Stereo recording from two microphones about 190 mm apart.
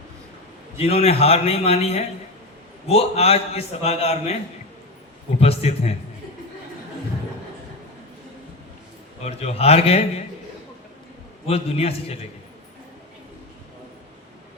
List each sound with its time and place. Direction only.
0.8 s a man's voice: 30° left (ahead or behind)
5.4 s a man's voice: 30° left (ahead or behind)
9.2 s a man's voice: 35° left (ahead or behind)
11.4 s a man's voice: 30° left (ahead or behind)